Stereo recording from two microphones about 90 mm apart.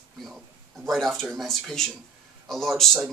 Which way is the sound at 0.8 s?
5° left (ahead or behind).